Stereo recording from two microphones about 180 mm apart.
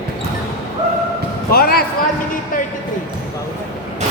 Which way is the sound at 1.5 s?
55° left (ahead or behind).